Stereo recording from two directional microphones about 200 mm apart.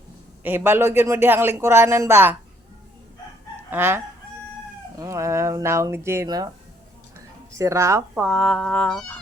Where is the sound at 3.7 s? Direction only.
10° right (ahead or behind).